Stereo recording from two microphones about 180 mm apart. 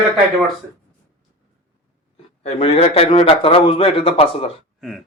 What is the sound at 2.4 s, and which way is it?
A man's voice, 35° left (ahead or behind).